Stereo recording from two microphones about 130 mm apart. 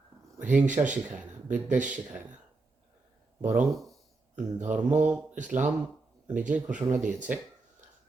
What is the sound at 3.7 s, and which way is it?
Speech, centre (ahead or behind).